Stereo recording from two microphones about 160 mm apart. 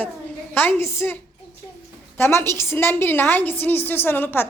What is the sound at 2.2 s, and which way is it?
A woman's voice, 15° left (ahead or behind).